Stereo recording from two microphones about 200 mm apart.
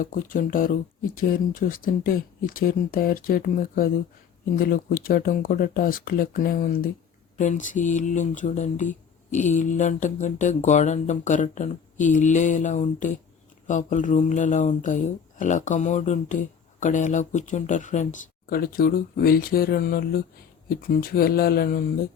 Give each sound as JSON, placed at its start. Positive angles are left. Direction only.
{"t": 0.0, "sound": "speech", "side_deg": 40}